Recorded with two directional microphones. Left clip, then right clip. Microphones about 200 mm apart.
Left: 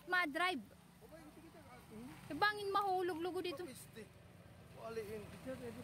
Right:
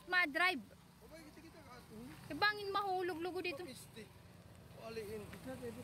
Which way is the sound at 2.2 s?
20° left (ahead or behind).